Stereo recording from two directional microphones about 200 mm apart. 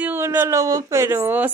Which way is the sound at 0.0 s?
10° right (ahead or behind).